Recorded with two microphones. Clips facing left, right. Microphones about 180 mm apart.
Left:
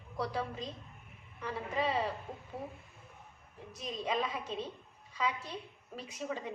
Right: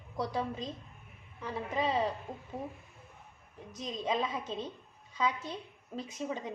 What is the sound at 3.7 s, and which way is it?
Speech, 20° right (ahead or behind).